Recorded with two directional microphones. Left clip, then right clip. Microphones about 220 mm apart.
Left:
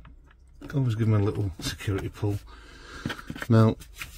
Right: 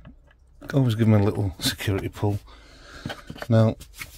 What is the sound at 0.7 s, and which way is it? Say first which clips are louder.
Speech: right 7 dB; 35° right (ahead or behind).